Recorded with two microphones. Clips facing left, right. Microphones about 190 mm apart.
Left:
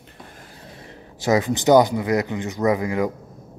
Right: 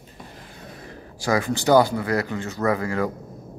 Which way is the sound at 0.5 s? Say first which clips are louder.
Right 3 dB; 25° left (ahead or behind).